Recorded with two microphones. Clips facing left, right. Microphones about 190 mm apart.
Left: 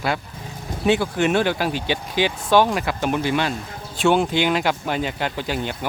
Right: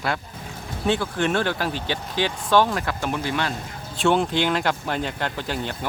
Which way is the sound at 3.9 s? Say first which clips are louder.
Left 2 dB; 5° left (ahead or behind).